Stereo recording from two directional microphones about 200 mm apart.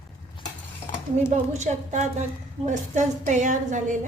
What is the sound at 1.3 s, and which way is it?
A woman's voice, 35° right (ahead or behind).